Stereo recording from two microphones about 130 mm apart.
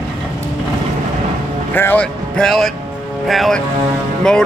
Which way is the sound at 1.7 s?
15° left (ahead or behind).